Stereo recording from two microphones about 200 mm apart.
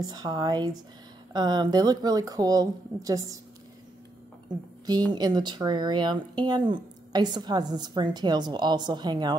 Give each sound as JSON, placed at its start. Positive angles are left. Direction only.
{"t": 0.0, "sound": "speech", "side_deg": -20}
{"t": 4.8, "sound": "speech", "side_deg": -20}